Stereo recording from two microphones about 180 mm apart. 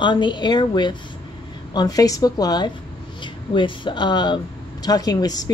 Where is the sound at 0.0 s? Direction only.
25° left (ahead or behind).